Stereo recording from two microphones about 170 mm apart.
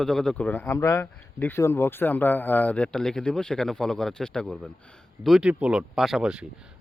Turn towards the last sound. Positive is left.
turn(degrees=-5)  # may be behind; listen again after turning